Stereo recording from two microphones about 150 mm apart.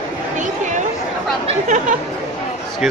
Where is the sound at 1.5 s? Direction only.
55° right (ahead or behind).